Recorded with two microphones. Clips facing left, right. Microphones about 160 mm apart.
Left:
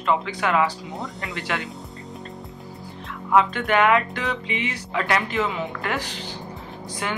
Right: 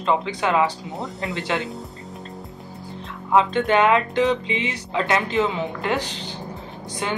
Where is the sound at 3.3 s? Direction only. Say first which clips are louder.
Right 1 dB; 25° right (ahead or behind).